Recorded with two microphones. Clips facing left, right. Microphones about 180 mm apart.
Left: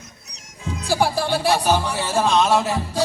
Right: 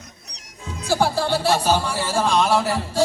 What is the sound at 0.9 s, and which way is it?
Music, 15° left (ahead or behind).